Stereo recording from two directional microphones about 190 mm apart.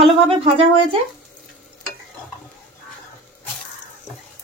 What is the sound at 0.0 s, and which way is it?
Speech, 30° right (ahead or behind).